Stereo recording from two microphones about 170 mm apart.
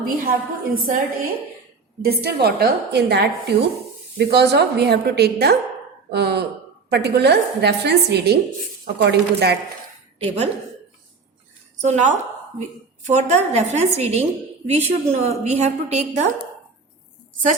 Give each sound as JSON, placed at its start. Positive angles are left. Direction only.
{"t": 0.0, "sound": "a woman's voice", "side_deg": -55}
{"t": 10.2, "sound": "a woman's voice", "side_deg": -40}
{"t": 11.8, "sound": "a woman's voice", "side_deg": -45}